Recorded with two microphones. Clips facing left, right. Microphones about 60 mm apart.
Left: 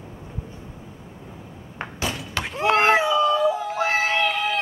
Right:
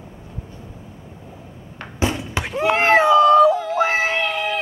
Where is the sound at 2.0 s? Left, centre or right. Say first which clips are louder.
Right 6 dB; right.